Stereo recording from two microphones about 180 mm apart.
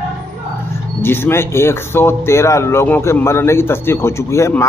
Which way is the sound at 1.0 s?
15° left (ahead or behind).